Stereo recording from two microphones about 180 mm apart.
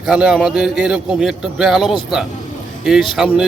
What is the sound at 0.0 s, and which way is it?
A man's voice, 5° right (ahead or behind).